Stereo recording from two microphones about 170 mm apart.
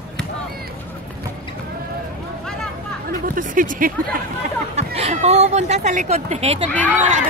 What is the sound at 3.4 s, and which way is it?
Speech, 50° right (ahead or behind).